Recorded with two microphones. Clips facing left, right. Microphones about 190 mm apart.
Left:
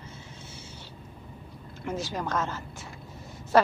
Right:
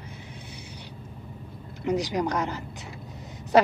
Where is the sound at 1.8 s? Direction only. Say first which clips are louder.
Right 7 dB; 15° right (ahead or behind).